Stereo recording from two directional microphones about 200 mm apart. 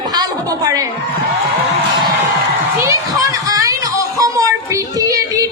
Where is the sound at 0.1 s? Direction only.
20° right (ahead or behind).